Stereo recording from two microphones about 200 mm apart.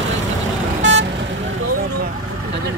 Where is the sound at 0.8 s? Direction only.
65° right (ahead or behind).